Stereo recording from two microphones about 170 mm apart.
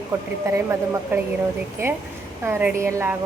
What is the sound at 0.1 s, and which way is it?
A woman's voice, 15° right (ahead or behind).